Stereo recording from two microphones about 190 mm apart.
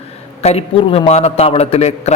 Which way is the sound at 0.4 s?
30° left (ahead or behind).